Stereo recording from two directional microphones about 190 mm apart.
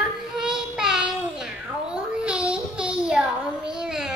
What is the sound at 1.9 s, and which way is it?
Child singing, 5° right (ahead or behind).